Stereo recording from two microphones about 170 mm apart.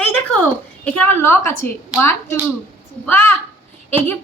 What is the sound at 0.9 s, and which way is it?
Speech, 10° left (ahead or behind).